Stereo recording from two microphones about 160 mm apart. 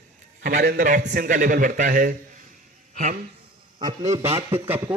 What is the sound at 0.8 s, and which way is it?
A man's voice, 60° right (ahead or behind).